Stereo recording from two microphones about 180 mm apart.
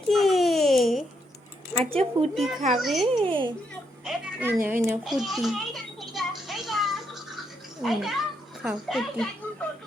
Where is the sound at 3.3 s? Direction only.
25° right (ahead or behind).